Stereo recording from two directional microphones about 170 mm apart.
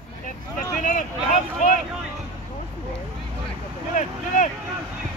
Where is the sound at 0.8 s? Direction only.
50° left (ahead or behind).